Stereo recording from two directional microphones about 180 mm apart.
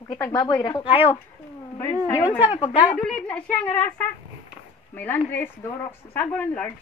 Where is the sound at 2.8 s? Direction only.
5° left (ahead or behind).